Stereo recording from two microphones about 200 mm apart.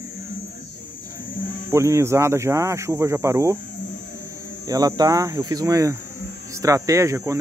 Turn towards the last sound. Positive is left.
turn(degrees=-15)  # may be behind; listen again after turning